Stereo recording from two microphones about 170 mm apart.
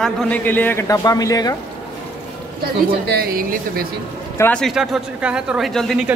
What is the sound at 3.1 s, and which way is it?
Speech, 60° right (ahead or behind).